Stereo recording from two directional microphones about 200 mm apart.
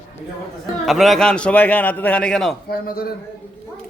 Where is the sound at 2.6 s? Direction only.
50° left (ahead or behind).